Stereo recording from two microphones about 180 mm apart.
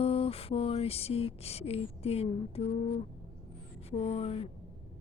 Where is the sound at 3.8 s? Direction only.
35° left (ahead or behind).